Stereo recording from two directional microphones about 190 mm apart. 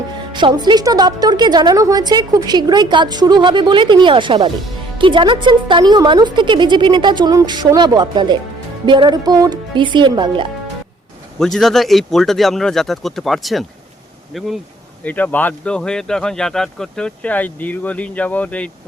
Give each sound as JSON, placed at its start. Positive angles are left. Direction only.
{"t": 0.3, "sound": "a woman's voice", "side_deg": -25}
{"t": 11.3, "sound": "speech", "side_deg": 0}